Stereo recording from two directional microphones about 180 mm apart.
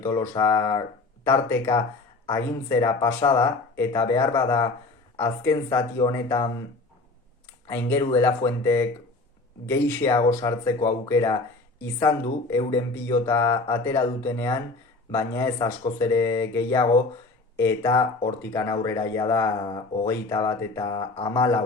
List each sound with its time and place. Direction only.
0.0 s speech: 15° left (ahead or behind)
7.7 s speech: 15° left (ahead or behind)
15.5 s speech: 25° left (ahead or behind)
16.0 s speech: 15° left (ahead or behind)